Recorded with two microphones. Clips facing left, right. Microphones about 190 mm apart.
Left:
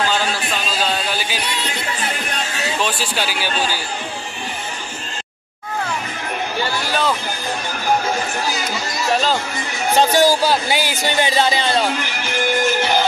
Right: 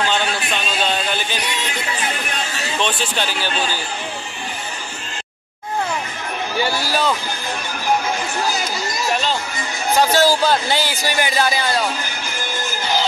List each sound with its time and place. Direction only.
0.1 s a man's voice: 5° left (ahead or behind)
2.8 s speech: 5° left (ahead or behind)
6.6 s a sound: 5° right (ahead or behind)
9.1 s music: 40° left (ahead or behind)
9.9 s speech: 15° left (ahead or behind)